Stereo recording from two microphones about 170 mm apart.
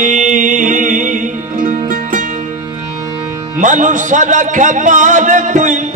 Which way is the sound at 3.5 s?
50° right (ahead or behind).